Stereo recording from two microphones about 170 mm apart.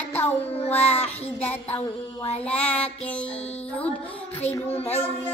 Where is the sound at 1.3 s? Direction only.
10° left (ahead or behind).